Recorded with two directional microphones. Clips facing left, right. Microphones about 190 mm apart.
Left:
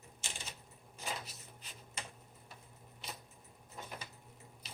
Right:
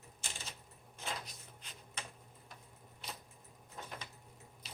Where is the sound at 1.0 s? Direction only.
10° left (ahead or behind).